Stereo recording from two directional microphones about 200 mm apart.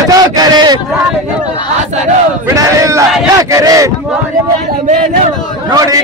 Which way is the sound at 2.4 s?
15° right (ahead or behind).